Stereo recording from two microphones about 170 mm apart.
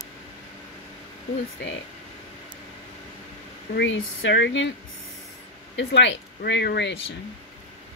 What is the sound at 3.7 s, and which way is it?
Speech, 90° left.